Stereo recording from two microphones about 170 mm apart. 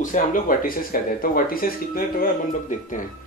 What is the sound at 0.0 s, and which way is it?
Speech, 50° left (ahead or behind).